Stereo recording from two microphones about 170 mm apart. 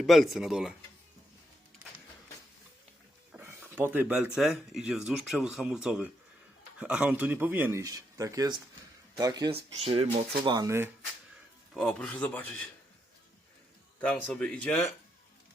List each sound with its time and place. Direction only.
0.0 s speech: centre (ahead or behind)
3.3 s a sound: 15° right (ahead or behind)
4.7 s speech: 5° right (ahead or behind)
11.7 s speech: 5° left (ahead or behind)
14.0 s speech: 5° left (ahead or behind)